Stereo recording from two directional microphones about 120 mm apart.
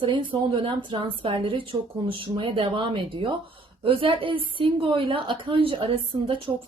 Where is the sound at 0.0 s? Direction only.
45° right (ahead or behind).